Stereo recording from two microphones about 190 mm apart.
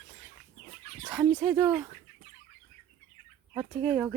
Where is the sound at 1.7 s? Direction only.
20° right (ahead or behind).